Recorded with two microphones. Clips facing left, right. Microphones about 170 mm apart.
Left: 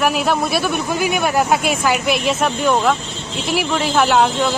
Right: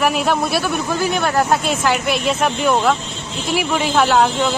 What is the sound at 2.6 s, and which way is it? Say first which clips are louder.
Speech: even; 10° right (ahead or behind).